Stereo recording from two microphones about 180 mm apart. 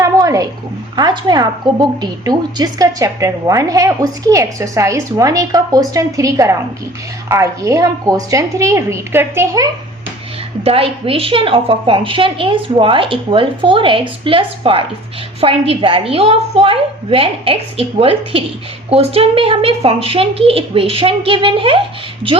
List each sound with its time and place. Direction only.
0.0 s a sound: 20° right (ahead or behind)
0.9 s a woman's voice: 25° right (ahead or behind)
10.6 s a woman's voice: 35° right (ahead or behind)